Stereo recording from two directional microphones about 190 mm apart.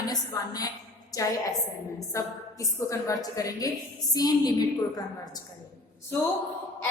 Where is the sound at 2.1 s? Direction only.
15° left (ahead or behind).